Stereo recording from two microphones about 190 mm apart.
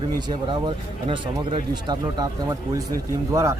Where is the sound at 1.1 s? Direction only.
25° right (ahead or behind).